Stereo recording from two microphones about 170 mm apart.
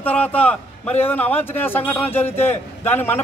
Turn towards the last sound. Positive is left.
turn(degrees=10)  # may be behind; listen again after turning